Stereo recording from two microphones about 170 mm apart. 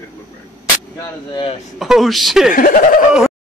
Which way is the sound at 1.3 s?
35° left (ahead or behind).